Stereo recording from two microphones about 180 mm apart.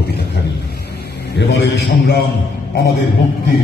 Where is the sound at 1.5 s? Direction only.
70° left (ahead or behind).